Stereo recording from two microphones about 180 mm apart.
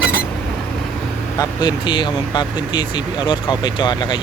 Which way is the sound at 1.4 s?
25° left (ahead or behind).